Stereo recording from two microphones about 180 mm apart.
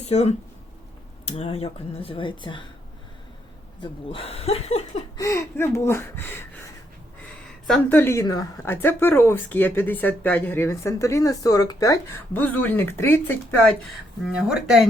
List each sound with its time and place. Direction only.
0.0 s speech: 35° left (ahead or behind)
3.8 s speech: 30° left (ahead or behind)
5.1 s speech: 15° left (ahead or behind)
7.7 s a woman's voice: 10° left (ahead or behind)
13.8 s speech: 5° right (ahead or behind)